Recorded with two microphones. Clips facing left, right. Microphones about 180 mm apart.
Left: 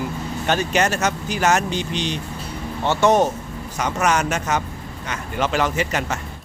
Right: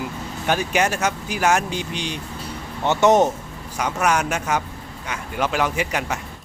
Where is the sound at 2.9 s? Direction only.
20° right (ahead or behind).